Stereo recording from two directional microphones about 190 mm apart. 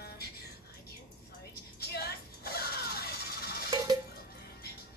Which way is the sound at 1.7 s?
55° left (ahead or behind).